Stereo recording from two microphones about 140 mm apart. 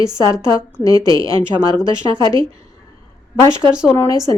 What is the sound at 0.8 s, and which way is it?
Speech, 25° left (ahead or behind).